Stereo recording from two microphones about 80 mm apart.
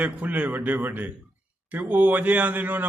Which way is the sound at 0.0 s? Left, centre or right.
Centre.